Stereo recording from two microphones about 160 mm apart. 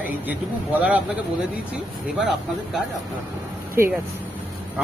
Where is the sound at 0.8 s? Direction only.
10° right (ahead or behind).